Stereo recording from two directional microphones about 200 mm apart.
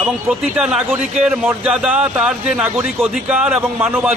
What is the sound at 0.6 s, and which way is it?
A man's voice, 5° right (ahead or behind).